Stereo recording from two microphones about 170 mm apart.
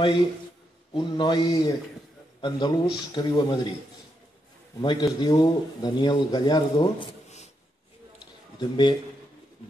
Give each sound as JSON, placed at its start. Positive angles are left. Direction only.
{"t": 0.9, "sound": "speech", "side_deg": 25}
{"t": 4.8, "sound": "speech", "side_deg": 25}
{"t": 8.5, "sound": "speech", "side_deg": 25}